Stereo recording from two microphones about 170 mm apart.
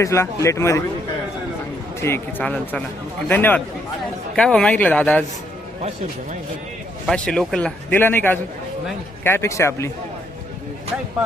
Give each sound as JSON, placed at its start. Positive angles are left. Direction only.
{"t": 0.0, "sound": "a man's voice", "side_deg": 15}
{"t": 2.0, "sound": "a man's voice", "side_deg": 15}
{"t": 7.1, "sound": "a man's voice", "side_deg": 5}